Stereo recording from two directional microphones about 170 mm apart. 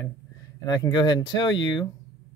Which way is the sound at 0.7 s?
25° left (ahead or behind).